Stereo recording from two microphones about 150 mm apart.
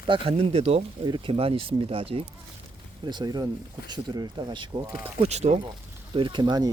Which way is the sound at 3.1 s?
30° right (ahead or behind).